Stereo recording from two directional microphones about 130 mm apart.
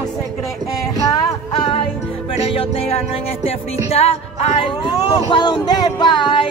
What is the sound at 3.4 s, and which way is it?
Music, 50° left (ahead or behind).